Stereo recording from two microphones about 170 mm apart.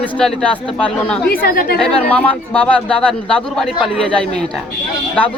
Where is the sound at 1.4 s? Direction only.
55° left (ahead or behind).